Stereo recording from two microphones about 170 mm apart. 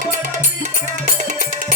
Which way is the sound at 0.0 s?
45° right (ahead or behind).